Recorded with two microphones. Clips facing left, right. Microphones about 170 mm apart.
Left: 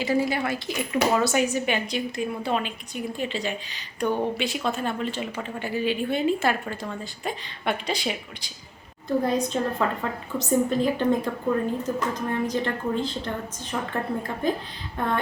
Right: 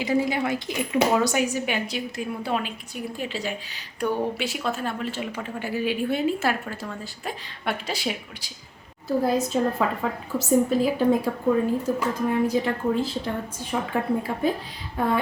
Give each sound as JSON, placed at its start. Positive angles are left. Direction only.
{"t": 0.0, "sound": "speech", "side_deg": -15}
{"t": 1.1, "sound": "a woman's voice", "side_deg": -10}